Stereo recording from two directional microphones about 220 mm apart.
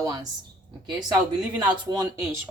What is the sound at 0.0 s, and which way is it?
Speech, 15° right (ahead or behind).